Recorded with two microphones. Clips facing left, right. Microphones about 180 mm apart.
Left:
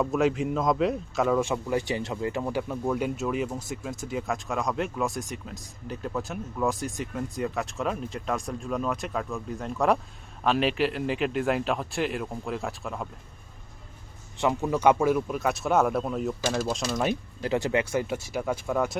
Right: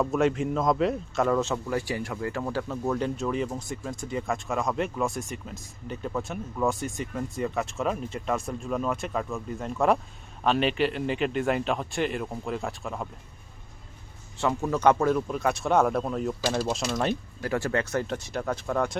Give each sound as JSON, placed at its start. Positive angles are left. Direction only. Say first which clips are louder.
{"t": 0.0, "sound": "speech", "louder": "even", "side_deg": 0}
{"t": 1.4, "sound": "speech", "louder": "left 1 dB", "side_deg": 15}
{"t": 14.3, "sound": "speech", "louder": "left 1 dB", "side_deg": 15}
{"t": 17.4, "sound": "speech", "louder": "left 2 dB", "side_deg": 20}